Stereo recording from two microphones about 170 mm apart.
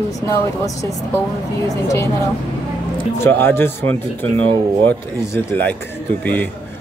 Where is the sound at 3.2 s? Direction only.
15° left (ahead or behind).